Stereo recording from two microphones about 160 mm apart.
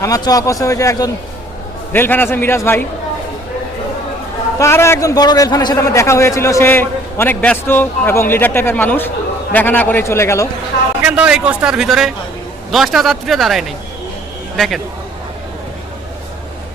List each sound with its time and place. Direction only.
0.0 s a man's voice: 20° left (ahead or behind)
4.5 s a man's voice: 15° left (ahead or behind)
11.0 s a man's voice: 5° right (ahead or behind)